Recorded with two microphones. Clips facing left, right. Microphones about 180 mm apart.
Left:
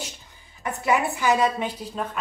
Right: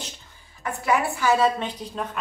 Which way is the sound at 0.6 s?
20° left (ahead or behind).